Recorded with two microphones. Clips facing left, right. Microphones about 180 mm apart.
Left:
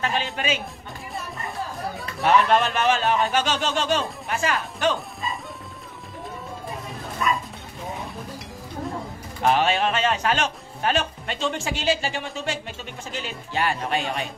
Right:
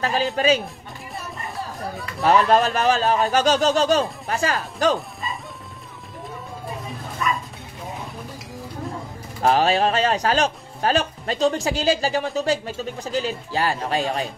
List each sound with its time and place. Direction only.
0.0 s speech: 35° right (ahead or behind)
2.2 s speech: 35° right (ahead or behind)
9.4 s speech: 35° right (ahead or behind)